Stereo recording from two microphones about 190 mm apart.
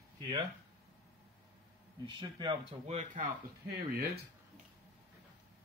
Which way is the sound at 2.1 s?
25° right (ahead or behind).